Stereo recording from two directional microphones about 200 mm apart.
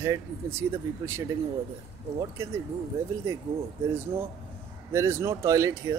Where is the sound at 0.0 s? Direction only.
15° right (ahead or behind).